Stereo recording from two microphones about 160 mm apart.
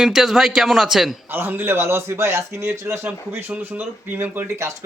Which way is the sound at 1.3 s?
15° right (ahead or behind).